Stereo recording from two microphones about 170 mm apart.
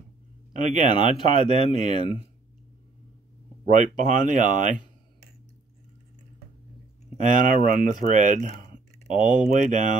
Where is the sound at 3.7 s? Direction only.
45° right (ahead or behind).